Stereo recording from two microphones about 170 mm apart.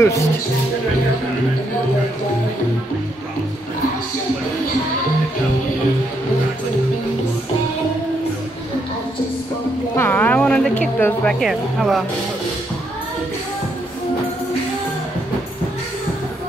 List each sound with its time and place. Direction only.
0.0 s speech: 20° left (ahead or behind)
9.9 s a sound: 10° left (ahead or behind)
11.3 s speech: centre (ahead or behind)